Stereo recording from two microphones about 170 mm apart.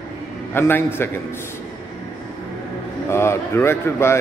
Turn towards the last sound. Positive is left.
turn(degrees=15)  # may be behind; listen again after turning